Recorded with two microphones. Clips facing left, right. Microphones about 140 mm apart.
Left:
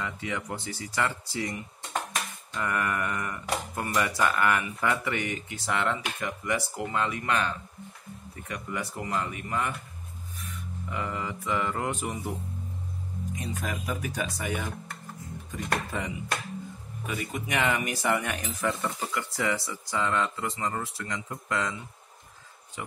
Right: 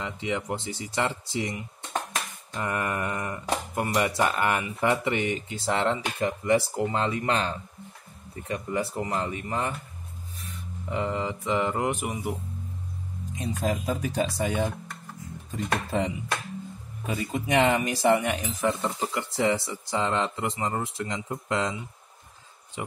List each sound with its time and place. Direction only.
0.0 s speech: 20° right (ahead or behind)
10.4 s mantra: 25° right (ahead or behind)
13.4 s speech: 25° right (ahead or behind)
22.8 s speech: 20° right (ahead or behind)